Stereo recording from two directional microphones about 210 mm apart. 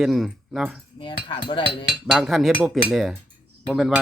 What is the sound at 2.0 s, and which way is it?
Speech, centre (ahead or behind).